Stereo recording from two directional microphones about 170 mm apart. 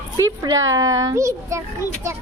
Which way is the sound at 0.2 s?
20° right (ahead or behind).